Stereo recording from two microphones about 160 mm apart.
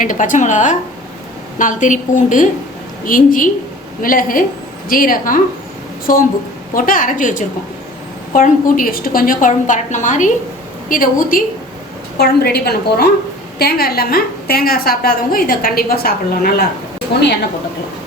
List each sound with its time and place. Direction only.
0.0 s a woman's voice: 55° left (ahead or behind)
12.1 s a woman's voice: 85° left